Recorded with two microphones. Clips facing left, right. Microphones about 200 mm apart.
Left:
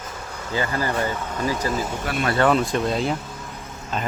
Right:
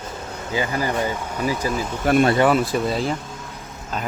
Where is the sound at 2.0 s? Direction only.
45° right (ahead or behind).